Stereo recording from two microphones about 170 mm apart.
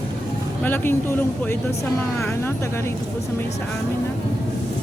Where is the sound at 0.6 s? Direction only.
10° left (ahead or behind).